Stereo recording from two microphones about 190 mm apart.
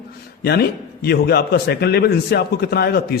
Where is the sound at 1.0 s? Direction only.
60° left (ahead or behind).